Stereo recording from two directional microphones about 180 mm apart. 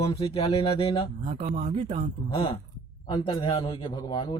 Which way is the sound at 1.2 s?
30° right (ahead or behind).